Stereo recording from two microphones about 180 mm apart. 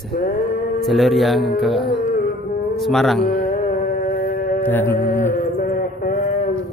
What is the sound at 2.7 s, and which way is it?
Mantra, centre (ahead or behind).